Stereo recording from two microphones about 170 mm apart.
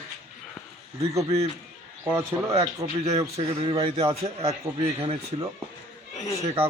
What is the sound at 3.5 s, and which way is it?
Speech, 35° right (ahead or behind).